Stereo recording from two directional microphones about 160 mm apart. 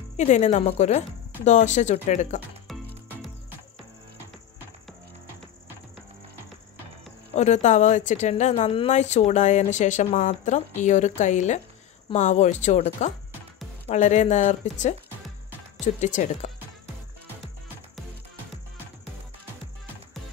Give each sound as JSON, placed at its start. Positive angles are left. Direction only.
{"t": 0.2, "sound": "speech", "side_deg": 45}
{"t": 2.7, "sound": "music", "side_deg": 0}
{"t": 7.3, "sound": "speech", "side_deg": 45}